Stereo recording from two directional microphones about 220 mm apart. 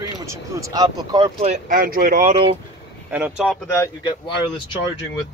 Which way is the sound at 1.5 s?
40° right (ahead or behind).